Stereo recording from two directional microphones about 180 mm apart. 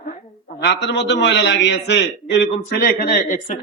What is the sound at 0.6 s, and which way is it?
A man's voice, 70° left (ahead or behind).